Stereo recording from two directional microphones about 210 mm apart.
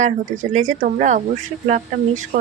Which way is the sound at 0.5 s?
35° right (ahead or behind).